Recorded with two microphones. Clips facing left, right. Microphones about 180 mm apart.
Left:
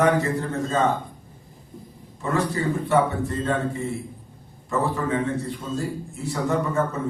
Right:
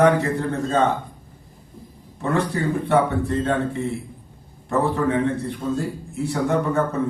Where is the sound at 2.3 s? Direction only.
60° right (ahead or behind).